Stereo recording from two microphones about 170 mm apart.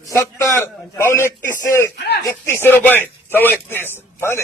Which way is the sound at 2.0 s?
75° left (ahead or behind).